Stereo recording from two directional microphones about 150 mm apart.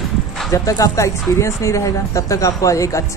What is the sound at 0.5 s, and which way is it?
Speech, 20° left (ahead or behind).